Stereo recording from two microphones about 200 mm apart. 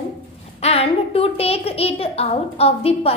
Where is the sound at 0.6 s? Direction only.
30° left (ahead or behind).